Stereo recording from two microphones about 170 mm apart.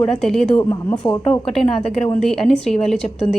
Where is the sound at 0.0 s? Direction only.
5° left (ahead or behind).